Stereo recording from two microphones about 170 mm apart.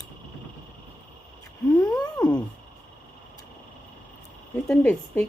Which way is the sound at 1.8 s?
25° left (ahead or behind).